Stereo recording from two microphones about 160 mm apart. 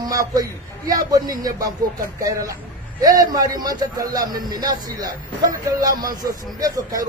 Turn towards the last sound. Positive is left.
turn(degrees=-20)  # may be behind; listen again after turning